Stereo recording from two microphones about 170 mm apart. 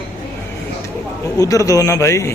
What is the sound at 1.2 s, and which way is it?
A man's voice, 20° left (ahead or behind).